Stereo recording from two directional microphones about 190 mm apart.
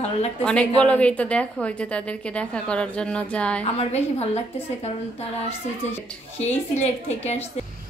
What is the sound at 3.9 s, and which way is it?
A woman's voice, 35° left (ahead or behind).